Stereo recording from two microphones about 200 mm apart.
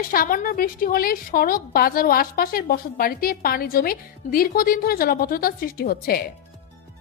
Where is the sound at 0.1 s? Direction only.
45° left (ahead or behind).